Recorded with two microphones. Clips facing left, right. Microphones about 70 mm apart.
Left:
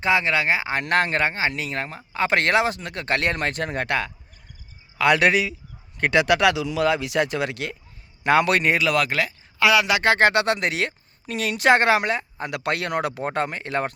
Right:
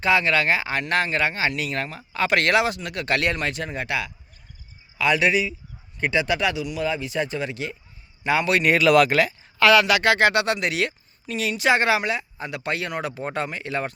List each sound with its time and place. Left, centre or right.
0.0 s speech: left
0.8 s speech: left
1.3 s a man's voice: left
8.8 s speech: centre
9.6 s a man's voice: centre
9.8 s speech: left
11.3 s speech: left